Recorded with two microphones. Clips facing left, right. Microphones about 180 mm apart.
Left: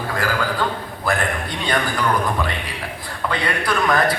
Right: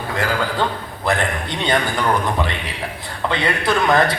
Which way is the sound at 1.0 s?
20° right (ahead or behind).